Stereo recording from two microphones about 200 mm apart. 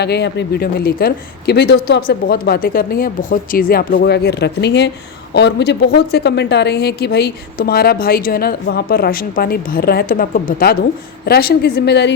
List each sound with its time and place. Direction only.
0.0 s a woman's voice: 55° left (ahead or behind)